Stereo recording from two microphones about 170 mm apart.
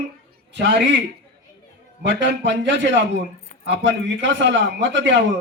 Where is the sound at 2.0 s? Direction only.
90° right.